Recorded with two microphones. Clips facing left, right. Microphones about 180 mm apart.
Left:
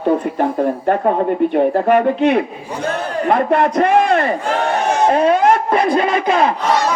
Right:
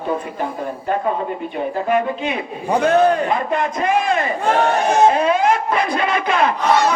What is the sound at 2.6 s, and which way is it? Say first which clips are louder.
Speech: right 8 dB; 65° right (ahead or behind).